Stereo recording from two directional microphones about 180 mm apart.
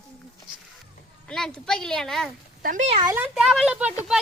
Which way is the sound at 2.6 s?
45° right (ahead or behind).